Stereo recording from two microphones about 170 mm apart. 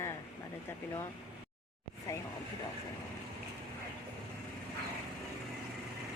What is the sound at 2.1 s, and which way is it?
Speech, 20° left (ahead or behind).